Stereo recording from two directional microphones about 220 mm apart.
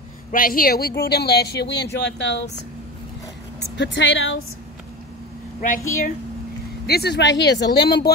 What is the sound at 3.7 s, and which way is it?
Speech, 55° left (ahead or behind).